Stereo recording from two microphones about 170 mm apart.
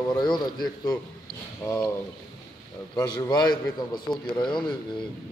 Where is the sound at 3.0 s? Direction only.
25° left (ahead or behind).